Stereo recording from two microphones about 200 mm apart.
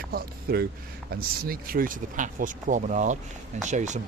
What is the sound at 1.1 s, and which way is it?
Speech, 45° right (ahead or behind).